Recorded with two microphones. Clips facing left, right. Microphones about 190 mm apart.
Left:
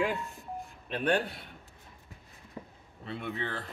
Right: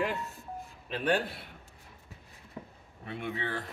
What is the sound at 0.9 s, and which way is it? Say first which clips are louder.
Speech: left 1 dB; 5° right (ahead or behind).